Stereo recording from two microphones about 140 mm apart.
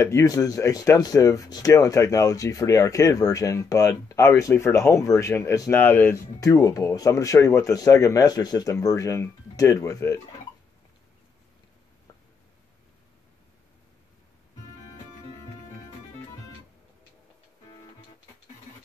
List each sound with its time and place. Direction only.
0.0 s speech: 20° left (ahead or behind)
6.4 s speech: 25° left (ahead or behind)